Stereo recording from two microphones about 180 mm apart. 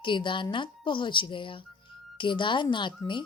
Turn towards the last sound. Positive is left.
turn(degrees=25)  # may be behind; listen again after turning